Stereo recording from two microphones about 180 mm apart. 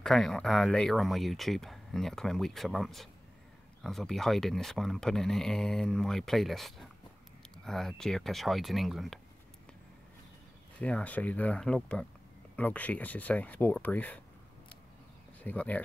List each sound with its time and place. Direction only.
0.0 s speech: centre (ahead or behind)
10.8 s speech: 5° left (ahead or behind)
15.4 s speech: 10° left (ahead or behind)